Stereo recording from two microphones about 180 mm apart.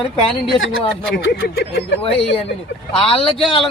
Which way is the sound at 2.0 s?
30° left (ahead or behind).